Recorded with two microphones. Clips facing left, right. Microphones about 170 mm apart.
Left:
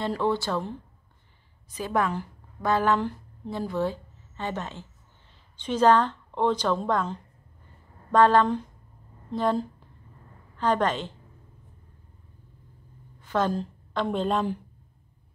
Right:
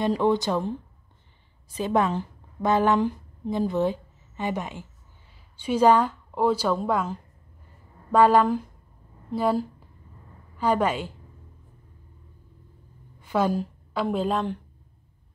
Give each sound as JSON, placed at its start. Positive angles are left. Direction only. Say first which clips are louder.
{"t": 0.0, "sound": "a woman's voice", "louder": "right 4 dB", "side_deg": -15}
{"t": 13.2, "sound": "a woman's voice", "louder": "right 2 dB", "side_deg": -10}